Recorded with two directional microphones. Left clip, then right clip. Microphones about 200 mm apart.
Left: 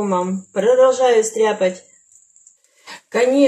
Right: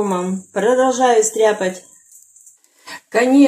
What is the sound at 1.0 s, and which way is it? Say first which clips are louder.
Speech: right 1 dB; 25° right (ahead or behind).